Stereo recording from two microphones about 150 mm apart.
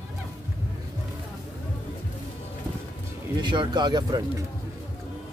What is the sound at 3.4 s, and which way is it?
Speech, 30° right (ahead or behind).